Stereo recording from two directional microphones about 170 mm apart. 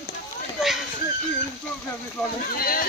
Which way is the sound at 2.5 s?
60° left (ahead or behind).